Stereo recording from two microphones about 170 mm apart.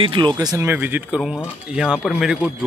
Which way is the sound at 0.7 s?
10° right (ahead or behind).